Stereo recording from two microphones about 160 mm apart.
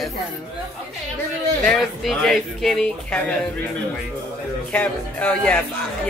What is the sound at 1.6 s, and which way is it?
Speech, centre (ahead or behind).